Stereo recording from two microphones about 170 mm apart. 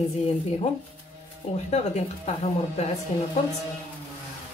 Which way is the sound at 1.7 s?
40° left (ahead or behind).